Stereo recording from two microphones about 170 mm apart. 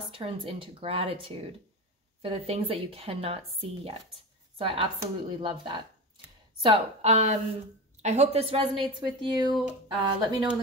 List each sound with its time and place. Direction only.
0.1 s speech: 35° right (ahead or behind)